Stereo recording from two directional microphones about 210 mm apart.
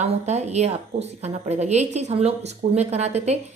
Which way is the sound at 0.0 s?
30° right (ahead or behind).